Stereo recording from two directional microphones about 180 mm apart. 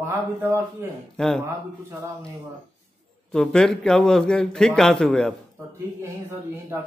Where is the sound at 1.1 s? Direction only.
Centre (ahead or behind).